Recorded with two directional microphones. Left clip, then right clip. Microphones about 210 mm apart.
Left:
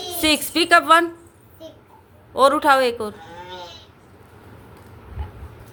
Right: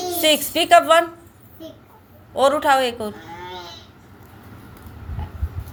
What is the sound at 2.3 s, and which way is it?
Speech, 25° left (ahead or behind).